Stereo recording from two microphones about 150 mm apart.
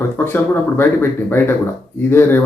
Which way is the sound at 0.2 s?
15° left (ahead or behind).